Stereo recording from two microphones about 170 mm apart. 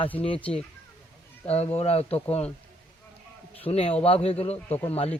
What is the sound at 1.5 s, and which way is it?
Speech, 35° left (ahead or behind).